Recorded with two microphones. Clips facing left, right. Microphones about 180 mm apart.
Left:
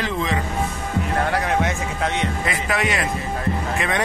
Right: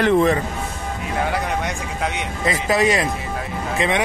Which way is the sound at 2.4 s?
35° right (ahead or behind).